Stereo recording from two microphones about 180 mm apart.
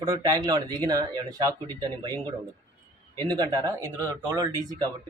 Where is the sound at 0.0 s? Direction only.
20° right (ahead or behind).